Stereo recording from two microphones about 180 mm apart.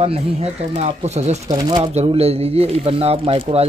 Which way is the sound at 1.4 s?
20° right (ahead or behind).